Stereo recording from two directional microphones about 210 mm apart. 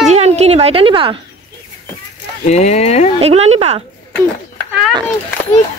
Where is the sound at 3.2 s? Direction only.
30° right (ahead or behind).